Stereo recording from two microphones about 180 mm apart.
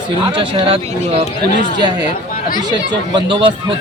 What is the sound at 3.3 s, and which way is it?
Speech, 25° right (ahead or behind).